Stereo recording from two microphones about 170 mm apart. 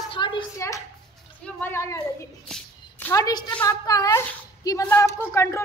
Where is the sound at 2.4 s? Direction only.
5° left (ahead or behind).